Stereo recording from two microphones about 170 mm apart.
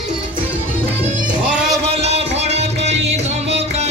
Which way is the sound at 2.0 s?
40° right (ahead or behind).